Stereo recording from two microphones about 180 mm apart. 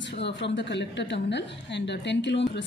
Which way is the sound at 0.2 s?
80° left.